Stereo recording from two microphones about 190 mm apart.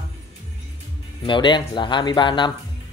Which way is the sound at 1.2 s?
25° left (ahead or behind).